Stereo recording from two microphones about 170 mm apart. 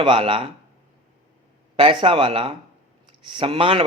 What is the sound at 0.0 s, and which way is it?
Speech, 30° right (ahead or behind).